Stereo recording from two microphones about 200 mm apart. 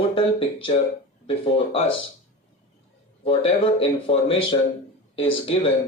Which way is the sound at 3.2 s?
25° left (ahead or behind).